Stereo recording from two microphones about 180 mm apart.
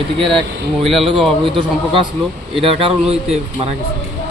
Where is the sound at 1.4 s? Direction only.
30° right (ahead or behind).